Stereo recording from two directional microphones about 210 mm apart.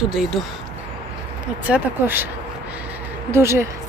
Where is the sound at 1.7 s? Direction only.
10° right (ahead or behind).